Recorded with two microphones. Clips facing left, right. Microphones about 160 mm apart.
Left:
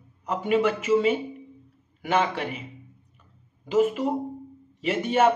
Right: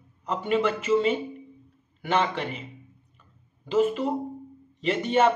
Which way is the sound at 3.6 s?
10° left (ahead or behind).